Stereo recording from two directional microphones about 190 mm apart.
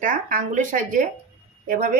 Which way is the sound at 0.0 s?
45° right (ahead or behind).